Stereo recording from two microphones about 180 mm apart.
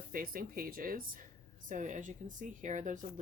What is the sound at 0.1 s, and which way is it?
Speech, 50° right (ahead or behind).